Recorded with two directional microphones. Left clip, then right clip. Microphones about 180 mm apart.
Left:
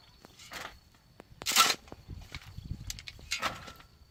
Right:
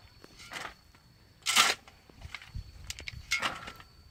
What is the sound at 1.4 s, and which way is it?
Single-lens reflex camera, 5° right (ahead or behind).